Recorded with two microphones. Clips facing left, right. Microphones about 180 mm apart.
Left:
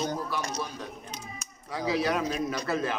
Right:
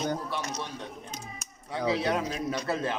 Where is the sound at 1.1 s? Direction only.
40° right (ahead or behind).